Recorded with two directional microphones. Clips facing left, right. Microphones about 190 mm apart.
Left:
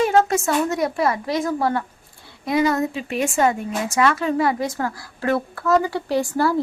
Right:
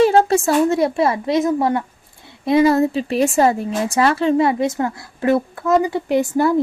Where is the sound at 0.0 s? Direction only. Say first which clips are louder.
Right 4 dB; 30° right (ahead or behind).